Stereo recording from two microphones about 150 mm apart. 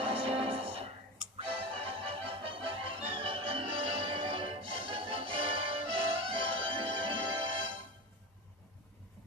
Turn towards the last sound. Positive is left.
turn(degrees=-35)  # may be behind; listen again after turning